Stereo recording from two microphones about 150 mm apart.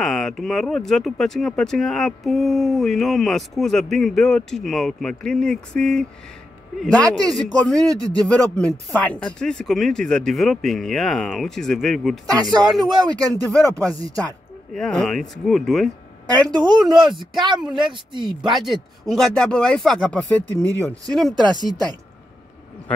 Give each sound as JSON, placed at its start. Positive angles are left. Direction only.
{"t": 0.0, "sound": "speech", "side_deg": 0}
{"t": 7.9, "sound": "speech", "side_deg": -25}
{"t": 8.3, "sound": "speech", "side_deg": 10}
{"t": 12.3, "sound": "speech", "side_deg": -25}
{"t": 13.3, "sound": "speech", "side_deg": 5}
{"t": 16.3, "sound": "speech", "side_deg": -25}
{"t": 16.8, "sound": "speech", "side_deg": 0}
{"t": 17.6, "sound": "speech", "side_deg": -30}
{"t": 18.7, "sound": "speech", "side_deg": 0}
{"t": 21.1, "sound": "speech", "side_deg": 0}
{"t": 21.4, "sound": "speech", "side_deg": -30}